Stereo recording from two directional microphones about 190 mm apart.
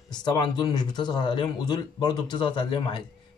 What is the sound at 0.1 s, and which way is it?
Speech, 20° left (ahead or behind).